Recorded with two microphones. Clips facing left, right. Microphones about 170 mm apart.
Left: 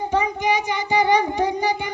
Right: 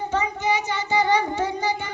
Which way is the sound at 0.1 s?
15° left (ahead or behind).